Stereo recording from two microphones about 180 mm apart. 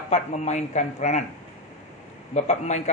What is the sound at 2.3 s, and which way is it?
Speech, 40° left (ahead or behind).